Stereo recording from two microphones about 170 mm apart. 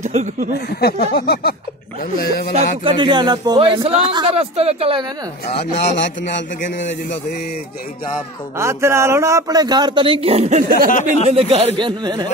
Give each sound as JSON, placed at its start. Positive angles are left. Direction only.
{"t": 0.0, "sound": "speech", "side_deg": -45}
{"t": 0.7, "sound": "a sound", "side_deg": 70}
{"t": 2.5, "sound": "a man's voice", "side_deg": -30}
{"t": 8.5, "sound": "a man's voice", "side_deg": -15}
{"t": 10.9, "sound": "speech", "side_deg": 50}
{"t": 11.2, "sound": "a man's voice", "side_deg": -35}